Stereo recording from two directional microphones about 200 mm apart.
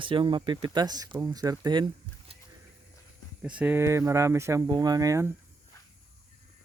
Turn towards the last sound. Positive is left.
turn(degrees=-15)  # may be behind; listen again after turning